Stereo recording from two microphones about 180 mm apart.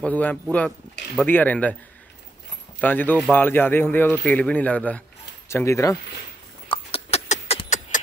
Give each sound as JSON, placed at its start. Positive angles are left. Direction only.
{"t": 0.0, "sound": "speech", "side_deg": 10}
{"t": 2.8, "sound": "speech", "side_deg": 10}
{"t": 6.7, "sound": "a sound", "side_deg": 35}